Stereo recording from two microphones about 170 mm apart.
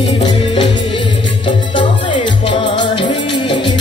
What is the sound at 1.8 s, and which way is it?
Music, 30° left (ahead or behind).